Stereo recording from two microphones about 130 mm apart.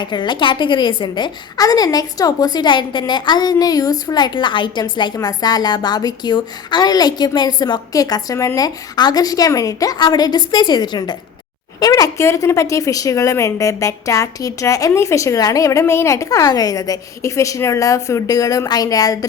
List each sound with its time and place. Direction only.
0.0 s a woman's voice: 35° left (ahead or behind)